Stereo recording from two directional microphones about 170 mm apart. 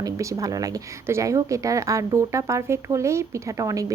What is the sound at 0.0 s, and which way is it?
Speech, 20° right (ahead or behind).